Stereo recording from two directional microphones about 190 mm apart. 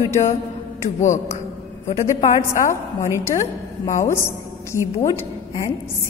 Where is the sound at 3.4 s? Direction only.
40° left (ahead or behind).